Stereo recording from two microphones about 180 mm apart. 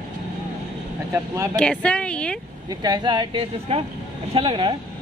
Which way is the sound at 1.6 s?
5° left (ahead or behind).